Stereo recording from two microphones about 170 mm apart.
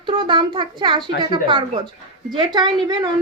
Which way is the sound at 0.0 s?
30° right (ahead or behind).